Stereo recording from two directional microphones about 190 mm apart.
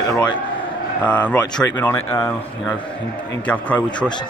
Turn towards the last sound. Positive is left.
turn(degrees=10)  # may be behind; listen again after turning